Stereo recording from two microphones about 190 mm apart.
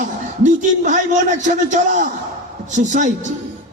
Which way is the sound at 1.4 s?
40° right (ahead or behind).